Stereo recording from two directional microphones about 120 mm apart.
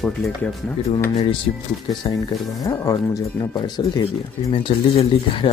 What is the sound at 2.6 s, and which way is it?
Speech, 35° left (ahead or behind).